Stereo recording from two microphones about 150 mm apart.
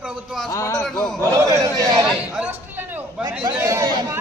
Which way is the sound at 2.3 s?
10° right (ahead or behind).